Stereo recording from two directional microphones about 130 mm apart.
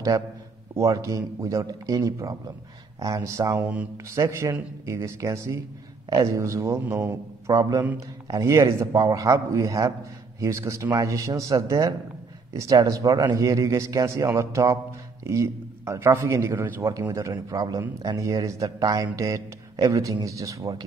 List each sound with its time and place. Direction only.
0.7 s speech: 25° right (ahead or behind)